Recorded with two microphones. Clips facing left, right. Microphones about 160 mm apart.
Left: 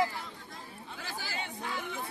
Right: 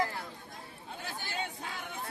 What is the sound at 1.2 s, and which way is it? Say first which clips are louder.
Chatter: even; 90° left.